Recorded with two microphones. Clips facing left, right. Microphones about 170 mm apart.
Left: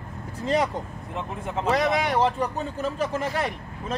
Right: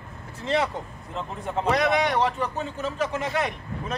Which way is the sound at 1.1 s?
5° left (ahead or behind).